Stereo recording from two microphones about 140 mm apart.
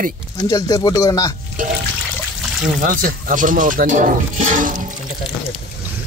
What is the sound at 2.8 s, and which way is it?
Speech, 70° right (ahead or behind).